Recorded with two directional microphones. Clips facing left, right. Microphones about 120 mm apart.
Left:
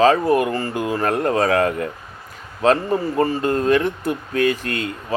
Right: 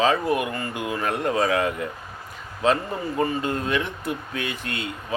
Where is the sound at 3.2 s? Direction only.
45° left (ahead or behind).